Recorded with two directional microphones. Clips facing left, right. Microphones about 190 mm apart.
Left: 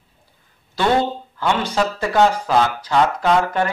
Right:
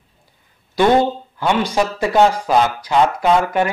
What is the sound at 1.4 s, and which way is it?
Speech, 15° right (ahead or behind).